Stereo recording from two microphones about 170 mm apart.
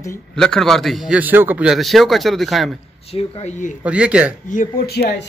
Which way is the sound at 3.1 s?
35° left (ahead or behind).